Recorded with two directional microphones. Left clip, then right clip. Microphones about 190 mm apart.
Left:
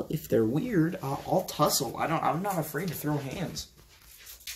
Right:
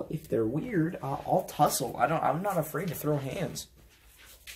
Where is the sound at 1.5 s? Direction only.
15° right (ahead or behind).